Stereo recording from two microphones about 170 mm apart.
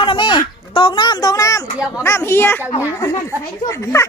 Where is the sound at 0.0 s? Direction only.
30° left (ahead or behind).